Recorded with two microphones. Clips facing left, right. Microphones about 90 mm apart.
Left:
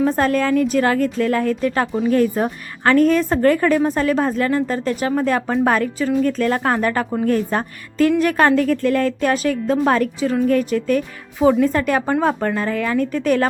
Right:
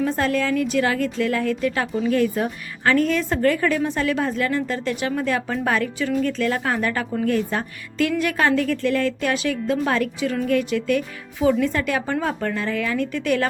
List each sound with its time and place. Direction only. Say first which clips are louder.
0.0 s a woman's voice: left 4 dB; 45° left (ahead or behind)